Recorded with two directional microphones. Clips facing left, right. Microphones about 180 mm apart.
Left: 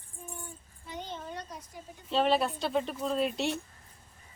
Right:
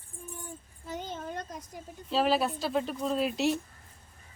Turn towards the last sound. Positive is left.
turn(degrees=0)  # may be behind; listen again after turning